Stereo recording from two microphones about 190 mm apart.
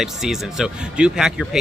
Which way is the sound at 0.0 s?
Centre (ahead or behind).